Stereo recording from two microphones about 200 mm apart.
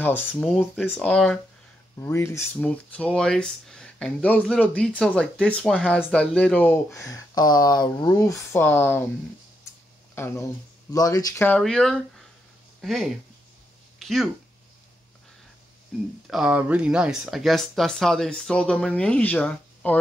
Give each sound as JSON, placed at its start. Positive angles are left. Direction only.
{"t": 0.2, "sound": "speech", "side_deg": -5}
{"t": 10.1, "sound": "speech", "side_deg": 10}
{"t": 13.9, "sound": "a sound", "side_deg": 0}
{"t": 16.3, "sound": "speech", "side_deg": -5}